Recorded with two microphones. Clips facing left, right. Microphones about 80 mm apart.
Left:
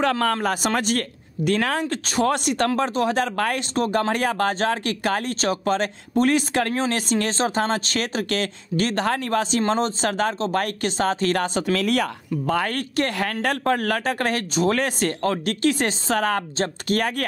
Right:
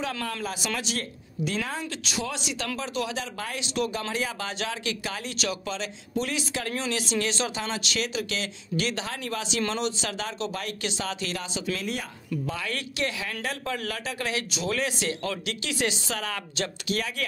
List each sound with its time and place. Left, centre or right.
0.0 s speech: left
1.9 s speech: left
3.7 s speech: left